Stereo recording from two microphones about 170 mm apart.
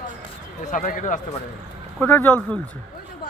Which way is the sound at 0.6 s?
50° left (ahead or behind).